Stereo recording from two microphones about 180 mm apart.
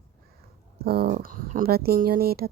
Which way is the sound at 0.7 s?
60° right (ahead or behind).